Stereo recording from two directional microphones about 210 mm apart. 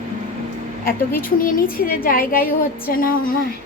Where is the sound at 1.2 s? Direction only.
40° left (ahead or behind).